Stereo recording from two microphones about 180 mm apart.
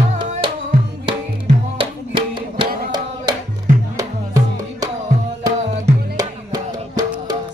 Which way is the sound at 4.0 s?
20° right (ahead or behind).